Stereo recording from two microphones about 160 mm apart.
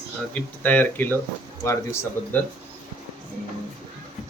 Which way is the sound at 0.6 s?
10° left (ahead or behind).